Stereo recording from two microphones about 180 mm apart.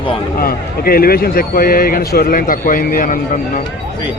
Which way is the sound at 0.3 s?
55° left (ahead or behind).